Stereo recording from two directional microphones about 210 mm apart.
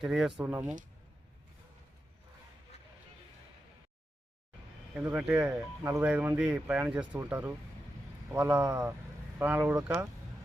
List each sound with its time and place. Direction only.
0.0 s speech: centre (ahead or behind)
4.9 s speech: 5° right (ahead or behind)